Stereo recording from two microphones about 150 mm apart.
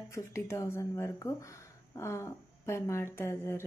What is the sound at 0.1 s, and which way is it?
A woman's voice, 20° left (ahead or behind).